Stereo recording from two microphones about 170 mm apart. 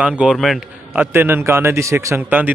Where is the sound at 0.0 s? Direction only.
5° right (ahead or behind).